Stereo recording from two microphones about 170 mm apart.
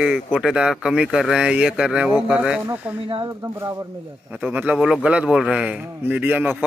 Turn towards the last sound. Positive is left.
turn(degrees=-10)  # may be behind; listen again after turning